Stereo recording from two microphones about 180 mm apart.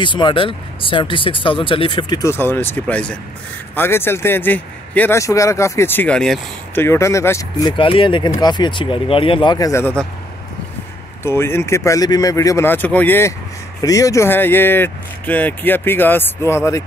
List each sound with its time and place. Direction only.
0.0 s a man's voice: 25° left (ahead or behind); by 6.8 s 5° left (ahead or behind)
6.8 s speech: 15° left (ahead or behind)
11.2 s a man's voice: 15° left (ahead or behind)